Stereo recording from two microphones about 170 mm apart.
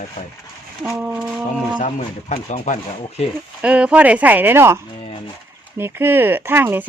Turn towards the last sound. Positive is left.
turn(degrees=-10)  # may be behind; listen again after turning